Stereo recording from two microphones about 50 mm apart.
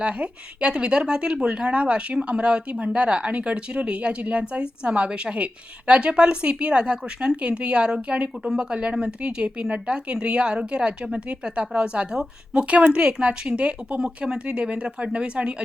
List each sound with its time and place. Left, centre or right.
0.0 s speech: right